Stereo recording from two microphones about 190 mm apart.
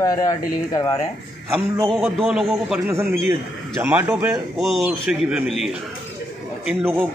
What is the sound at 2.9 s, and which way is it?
A man's voice, 15° right (ahead or behind).